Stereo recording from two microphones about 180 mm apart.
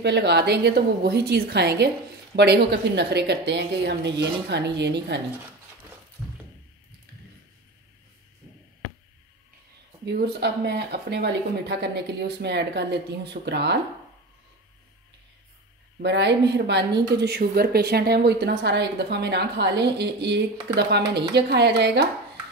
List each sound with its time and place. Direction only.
0.0 s a woman's voice: 65° right (ahead or behind)
6.2 s thunk: 5° right (ahead or behind)
10.0 s speech: 65° right (ahead or behind)
16.0 s speech: 70° right (ahead or behind)